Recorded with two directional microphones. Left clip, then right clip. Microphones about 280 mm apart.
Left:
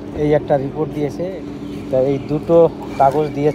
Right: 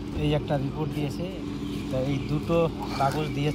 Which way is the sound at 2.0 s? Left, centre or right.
Centre.